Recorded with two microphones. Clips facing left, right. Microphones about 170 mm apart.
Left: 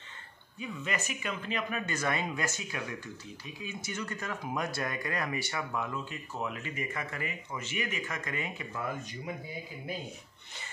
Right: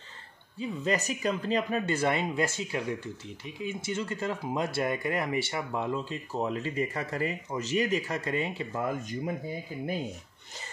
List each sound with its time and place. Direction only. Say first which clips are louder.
0.6 s speech: right 7 dB; 35° right (ahead or behind)
9.0 s speech: right 8 dB; 50° right (ahead or behind)